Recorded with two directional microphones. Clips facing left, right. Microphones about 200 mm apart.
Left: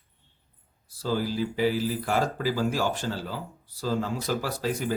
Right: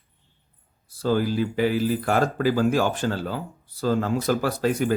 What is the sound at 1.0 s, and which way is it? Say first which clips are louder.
Speech: right 5 dB; 55° right (ahead or behind).